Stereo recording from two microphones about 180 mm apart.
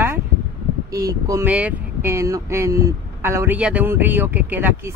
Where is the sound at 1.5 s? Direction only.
10° right (ahead or behind).